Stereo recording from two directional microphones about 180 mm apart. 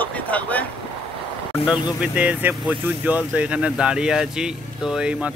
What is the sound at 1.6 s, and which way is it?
Speech, 25° left (ahead or behind).